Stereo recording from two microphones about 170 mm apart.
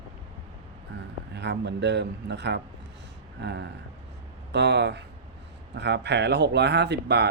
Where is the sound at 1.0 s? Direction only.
90° right.